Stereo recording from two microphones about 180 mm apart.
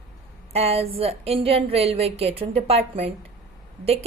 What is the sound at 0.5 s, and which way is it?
A woman's voice, 35° right (ahead or behind).